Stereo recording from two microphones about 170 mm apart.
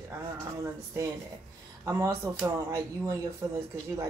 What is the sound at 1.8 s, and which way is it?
Speech, 15° right (ahead or behind).